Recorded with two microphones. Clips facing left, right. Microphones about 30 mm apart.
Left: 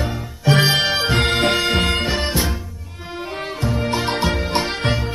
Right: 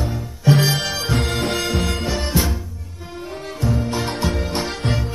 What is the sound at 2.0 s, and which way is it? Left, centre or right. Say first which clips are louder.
Music: left 1 dB; left.